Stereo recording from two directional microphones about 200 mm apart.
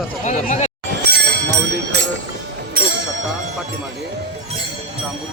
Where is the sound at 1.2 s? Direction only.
60° right (ahead or behind).